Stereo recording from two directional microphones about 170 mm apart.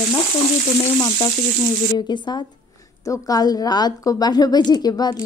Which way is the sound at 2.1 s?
25° left (ahead or behind).